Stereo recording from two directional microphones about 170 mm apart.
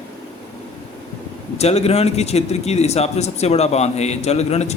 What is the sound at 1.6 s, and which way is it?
A man's voice, 40° left (ahead or behind).